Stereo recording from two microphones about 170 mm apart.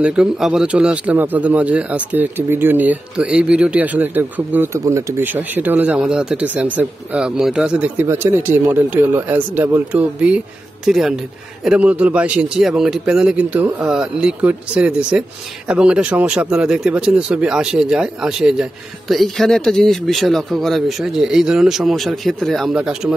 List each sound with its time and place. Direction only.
0.0 s a man's voice: 5° right (ahead or behind)